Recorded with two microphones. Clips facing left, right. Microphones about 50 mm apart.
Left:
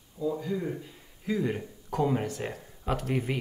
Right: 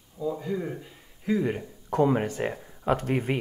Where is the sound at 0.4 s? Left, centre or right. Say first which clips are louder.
Right 1 dB; centre.